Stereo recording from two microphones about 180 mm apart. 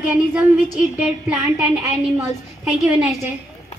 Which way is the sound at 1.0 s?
5° right (ahead or behind).